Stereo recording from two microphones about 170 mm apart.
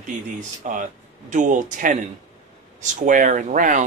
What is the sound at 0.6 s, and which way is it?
Speech, 45° right (ahead or behind).